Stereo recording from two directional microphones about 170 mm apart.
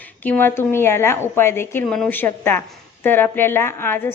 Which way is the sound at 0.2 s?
10° left (ahead or behind).